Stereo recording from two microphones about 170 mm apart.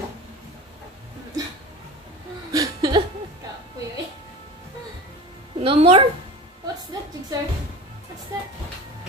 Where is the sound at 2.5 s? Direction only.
25° right (ahead or behind).